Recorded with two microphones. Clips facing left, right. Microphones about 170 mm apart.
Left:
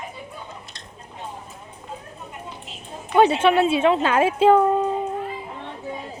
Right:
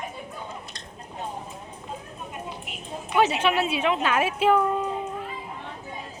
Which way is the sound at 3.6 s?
35° left (ahead or behind).